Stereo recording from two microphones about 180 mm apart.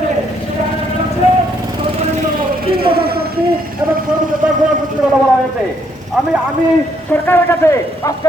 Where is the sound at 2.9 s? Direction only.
60° right (ahead or behind).